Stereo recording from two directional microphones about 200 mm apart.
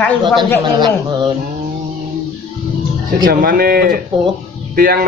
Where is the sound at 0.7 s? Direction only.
20° right (ahead or behind).